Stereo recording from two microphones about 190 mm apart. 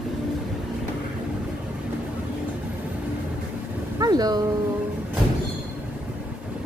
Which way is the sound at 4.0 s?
20° right (ahead or behind).